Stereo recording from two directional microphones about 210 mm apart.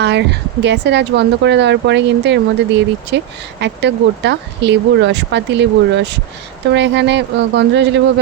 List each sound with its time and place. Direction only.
0.0 s speech: 55° right (ahead or behind)